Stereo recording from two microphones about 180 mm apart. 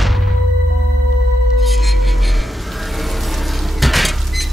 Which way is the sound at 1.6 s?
Centre (ahead or behind).